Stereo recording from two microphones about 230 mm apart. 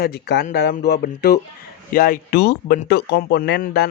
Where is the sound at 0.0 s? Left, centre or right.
Left.